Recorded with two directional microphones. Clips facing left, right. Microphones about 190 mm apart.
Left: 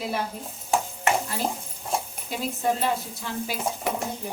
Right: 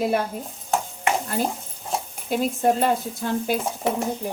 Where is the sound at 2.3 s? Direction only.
55° right (ahead or behind).